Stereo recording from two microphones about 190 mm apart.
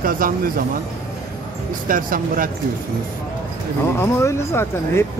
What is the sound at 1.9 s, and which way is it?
Speech, 45° right (ahead or behind).